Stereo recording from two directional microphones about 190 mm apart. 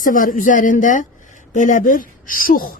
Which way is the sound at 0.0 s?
45° left (ahead or behind).